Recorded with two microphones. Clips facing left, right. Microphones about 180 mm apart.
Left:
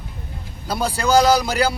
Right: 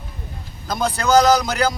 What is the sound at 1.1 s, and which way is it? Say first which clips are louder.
Speech: right 1 dB; 10° left (ahead or behind).